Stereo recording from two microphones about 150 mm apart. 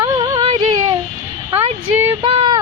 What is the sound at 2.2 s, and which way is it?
Child singing, 35° right (ahead or behind).